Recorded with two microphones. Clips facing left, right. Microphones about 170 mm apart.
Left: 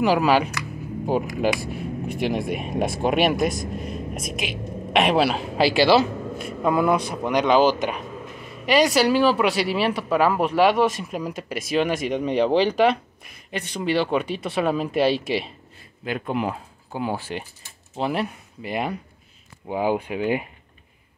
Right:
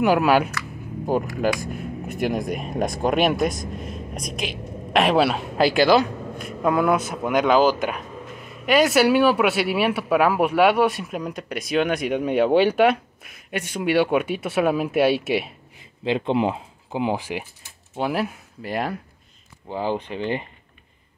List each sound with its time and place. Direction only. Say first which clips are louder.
0.0 s speech: right 1 dB; 5° right (ahead or behind)
0.6 s speech: left 2 dB; 15° left (ahead or behind)
2.0 s speech: right 1 dB; 50° right (ahead or behind)
2.3 s speech: even; 5° left (ahead or behind)
16.0 s speech: right 5 dB; 25° right (ahead or behind); by 20.4 s 10° left (ahead or behind)